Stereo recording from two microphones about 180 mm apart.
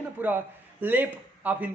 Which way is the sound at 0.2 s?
10° right (ahead or behind).